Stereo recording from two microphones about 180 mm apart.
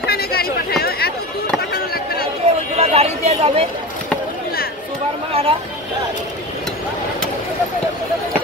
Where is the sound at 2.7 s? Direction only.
35° right (ahead or behind).